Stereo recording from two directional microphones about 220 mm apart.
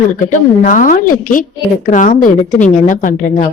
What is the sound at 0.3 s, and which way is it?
A woman's voice, 35° left (ahead or behind).